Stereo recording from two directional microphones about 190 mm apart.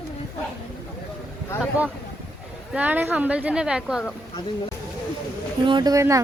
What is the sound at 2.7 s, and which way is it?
A woman's voice, 10° right (ahead or behind).